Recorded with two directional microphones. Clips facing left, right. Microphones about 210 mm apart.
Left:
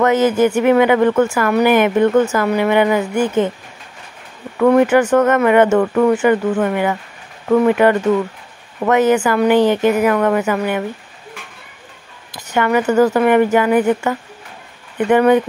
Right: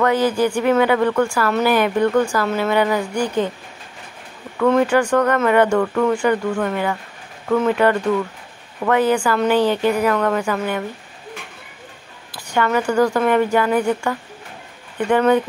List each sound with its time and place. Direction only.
0.0 s speech: 20° left (ahead or behind)
4.6 s speech: 20° left (ahead or behind)
12.5 s speech: 15° left (ahead or behind)